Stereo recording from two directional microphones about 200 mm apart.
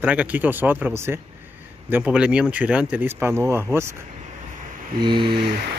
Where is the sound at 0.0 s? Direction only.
5° right (ahead or behind).